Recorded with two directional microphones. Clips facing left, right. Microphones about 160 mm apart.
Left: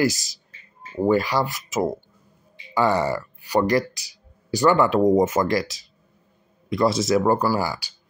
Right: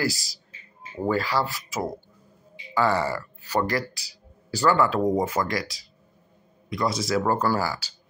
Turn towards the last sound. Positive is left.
turn(degrees=15)  # may be behind; listen again after turning